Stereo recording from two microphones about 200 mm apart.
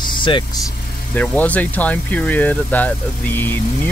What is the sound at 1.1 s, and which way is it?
Speech, 10° left (ahead or behind).